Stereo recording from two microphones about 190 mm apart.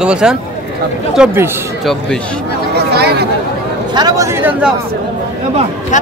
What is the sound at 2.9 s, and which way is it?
Chatter, 60° right (ahead or behind).